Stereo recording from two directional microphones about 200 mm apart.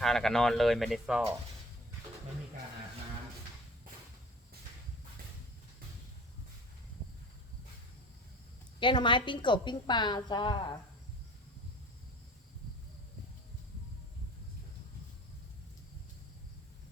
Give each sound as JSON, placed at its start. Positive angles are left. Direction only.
{"t": 0.0, "sound": "speech", "side_deg": 0}
{"t": 8.8, "sound": "a woman's voice", "side_deg": 25}